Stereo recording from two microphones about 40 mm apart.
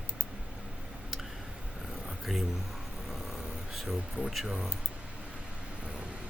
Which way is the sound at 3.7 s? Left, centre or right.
Centre.